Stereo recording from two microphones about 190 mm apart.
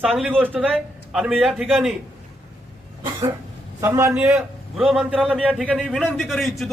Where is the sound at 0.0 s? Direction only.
Centre (ahead or behind).